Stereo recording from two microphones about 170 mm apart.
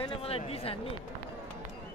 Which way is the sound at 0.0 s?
35° left (ahead or behind).